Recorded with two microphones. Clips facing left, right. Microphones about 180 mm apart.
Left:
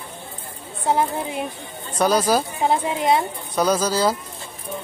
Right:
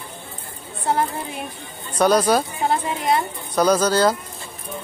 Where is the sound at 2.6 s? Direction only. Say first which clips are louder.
Left 2 dB; 20° left (ahead or behind).